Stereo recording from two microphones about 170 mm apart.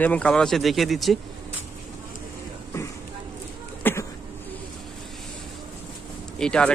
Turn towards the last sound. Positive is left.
turn(degrees=5)  # may be behind; listen again after turning